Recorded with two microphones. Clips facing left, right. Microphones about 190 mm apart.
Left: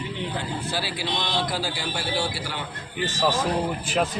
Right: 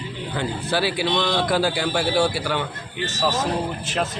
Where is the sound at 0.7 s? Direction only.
65° right (ahead or behind).